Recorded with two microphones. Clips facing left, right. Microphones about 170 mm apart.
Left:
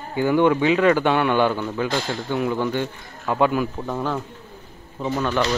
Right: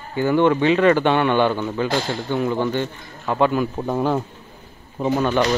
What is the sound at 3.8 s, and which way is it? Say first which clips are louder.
Speech: right 5 dB; 20° right (ahead or behind).